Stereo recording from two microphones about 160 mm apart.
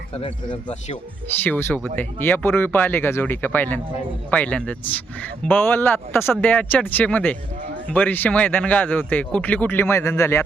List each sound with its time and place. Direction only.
0.1 s speech: 35° left (ahead or behind)
1.4 s speech: 15° left (ahead or behind)